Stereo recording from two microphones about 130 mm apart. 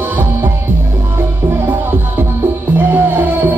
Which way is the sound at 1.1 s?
15° right (ahead or behind).